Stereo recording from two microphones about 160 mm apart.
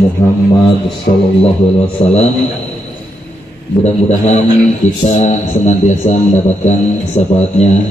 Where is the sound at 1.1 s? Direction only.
55° left (ahead or behind).